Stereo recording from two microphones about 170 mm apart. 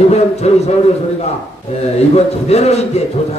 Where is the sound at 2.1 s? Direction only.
40° left (ahead or behind).